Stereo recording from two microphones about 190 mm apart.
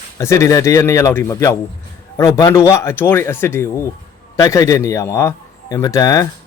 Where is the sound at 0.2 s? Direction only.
15° left (ahead or behind).